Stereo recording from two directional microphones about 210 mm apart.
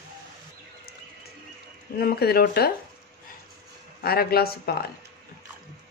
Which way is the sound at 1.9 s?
45° left (ahead or behind).